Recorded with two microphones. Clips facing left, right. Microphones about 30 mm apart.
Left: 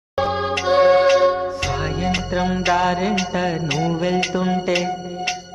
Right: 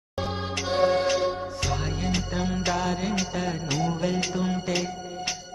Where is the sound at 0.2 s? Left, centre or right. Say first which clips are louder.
Left 10 dB; left.